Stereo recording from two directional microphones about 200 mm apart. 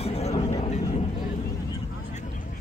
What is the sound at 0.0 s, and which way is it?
Vehicle, 30° left (ahead or behind).